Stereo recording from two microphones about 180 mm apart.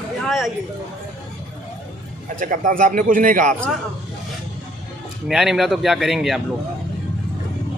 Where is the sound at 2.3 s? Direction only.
45° right (ahead or behind).